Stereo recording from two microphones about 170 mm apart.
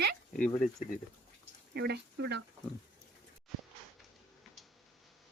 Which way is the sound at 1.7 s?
75° right (ahead or behind).